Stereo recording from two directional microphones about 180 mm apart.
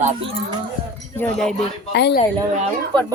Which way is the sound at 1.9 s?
70° left (ahead or behind).